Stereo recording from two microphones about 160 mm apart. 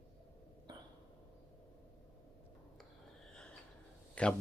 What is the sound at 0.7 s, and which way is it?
Hiccup, 30° right (ahead or behind).